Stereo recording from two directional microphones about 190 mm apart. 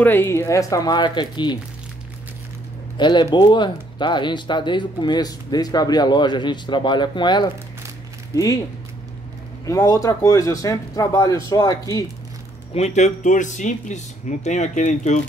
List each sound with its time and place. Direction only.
0.0 s speech: 10° left (ahead or behind)
3.0 s speech: 20° left (ahead or behind)
9.7 s speech: 15° left (ahead or behind)
12.7 s speech: 35° left (ahead or behind)